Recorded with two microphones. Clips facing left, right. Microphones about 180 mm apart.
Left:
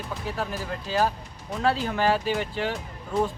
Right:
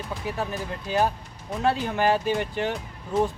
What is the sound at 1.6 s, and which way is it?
Speech, 15° right (ahead or behind).